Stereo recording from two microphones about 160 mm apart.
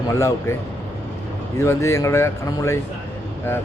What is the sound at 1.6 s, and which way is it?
Speech, 20° left (ahead or behind).